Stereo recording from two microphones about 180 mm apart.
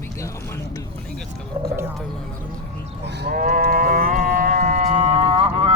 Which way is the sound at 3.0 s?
70° right (ahead or behind).